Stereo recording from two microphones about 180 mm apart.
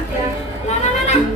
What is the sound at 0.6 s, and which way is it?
Music, 40° left (ahead or behind).